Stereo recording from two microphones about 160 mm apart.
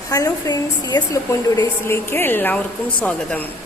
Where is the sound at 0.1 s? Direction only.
20° left (ahead or behind).